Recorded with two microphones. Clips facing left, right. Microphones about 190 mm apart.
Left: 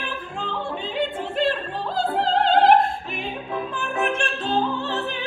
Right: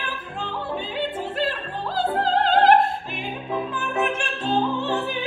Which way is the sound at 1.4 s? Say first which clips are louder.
Left 6 dB; centre (ahead or behind).